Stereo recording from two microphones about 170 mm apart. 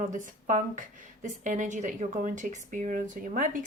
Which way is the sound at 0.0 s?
50° right (ahead or behind).